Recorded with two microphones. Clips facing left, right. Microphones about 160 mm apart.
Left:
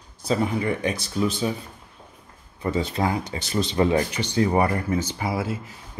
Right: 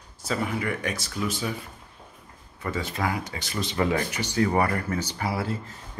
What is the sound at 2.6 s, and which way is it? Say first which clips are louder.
Speech: left 5 dB; 25° left (ahead or behind).